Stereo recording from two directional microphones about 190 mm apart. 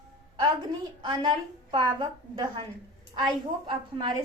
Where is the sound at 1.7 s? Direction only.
20° right (ahead or behind).